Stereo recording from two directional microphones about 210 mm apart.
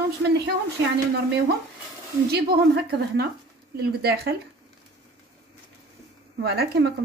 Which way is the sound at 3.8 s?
50° right (ahead or behind).